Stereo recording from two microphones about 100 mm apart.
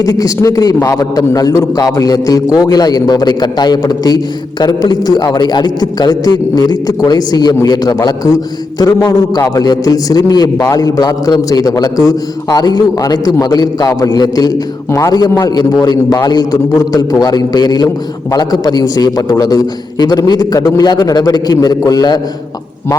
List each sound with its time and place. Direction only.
0.0 s a man's voice: 35° left (ahead or behind)
14.8 s a man's voice: 30° left (ahead or behind)
15.1 s a man's voice: 40° left (ahead or behind)